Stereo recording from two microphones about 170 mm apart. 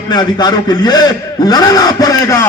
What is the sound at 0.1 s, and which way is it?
A man's voice, 25° left (ahead or behind).